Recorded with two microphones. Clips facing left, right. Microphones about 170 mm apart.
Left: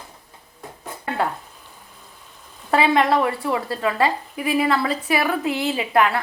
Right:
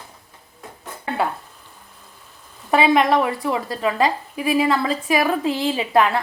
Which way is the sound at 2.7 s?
15° right (ahead or behind).